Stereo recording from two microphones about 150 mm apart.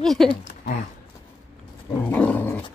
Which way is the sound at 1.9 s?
10° left (ahead or behind).